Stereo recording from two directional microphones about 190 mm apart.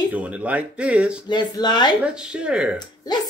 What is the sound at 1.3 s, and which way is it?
Speech, 20° left (ahead or behind).